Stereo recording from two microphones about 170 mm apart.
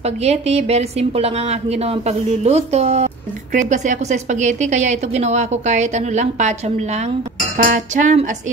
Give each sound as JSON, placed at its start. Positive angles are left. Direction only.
{"t": 0.0, "sound": "a woman's voice", "side_deg": -40}